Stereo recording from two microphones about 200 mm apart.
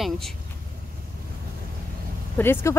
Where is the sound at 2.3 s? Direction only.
10° left (ahead or behind).